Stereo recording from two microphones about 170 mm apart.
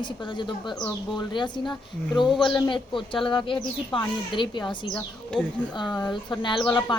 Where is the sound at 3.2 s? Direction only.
30° left (ahead or behind).